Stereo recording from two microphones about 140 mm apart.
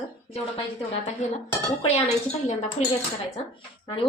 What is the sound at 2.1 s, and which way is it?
Speech, 50° left (ahead or behind).